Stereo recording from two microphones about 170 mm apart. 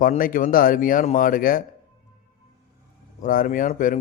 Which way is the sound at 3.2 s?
55° left (ahead or behind).